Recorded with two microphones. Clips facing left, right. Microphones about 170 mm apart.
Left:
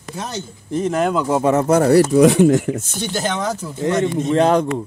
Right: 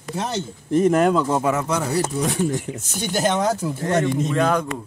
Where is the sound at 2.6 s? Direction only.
45° left (ahead or behind).